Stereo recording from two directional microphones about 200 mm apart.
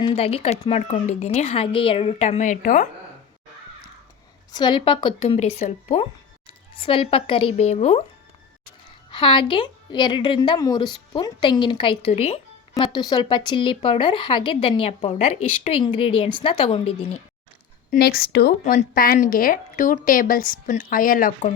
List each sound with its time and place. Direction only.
0.0 s speech: 30° left (ahead or behind)
4.5 s a woman's voice: 20° left (ahead or behind)
9.1 s a woman's voice: 25° left (ahead or behind)
17.9 s speech: 50° left (ahead or behind)
18.6 s speech: 40° left (ahead or behind)